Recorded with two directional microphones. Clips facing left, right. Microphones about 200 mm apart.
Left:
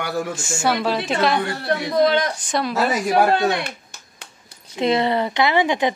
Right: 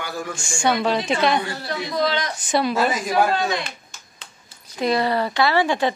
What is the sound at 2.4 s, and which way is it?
Speech, centre (ahead or behind).